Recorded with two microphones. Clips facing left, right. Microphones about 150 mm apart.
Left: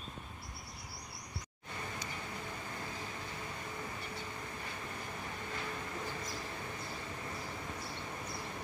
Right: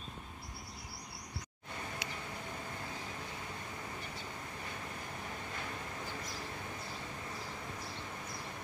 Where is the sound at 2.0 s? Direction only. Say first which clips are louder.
Right 1 dB; 65° right (ahead or behind).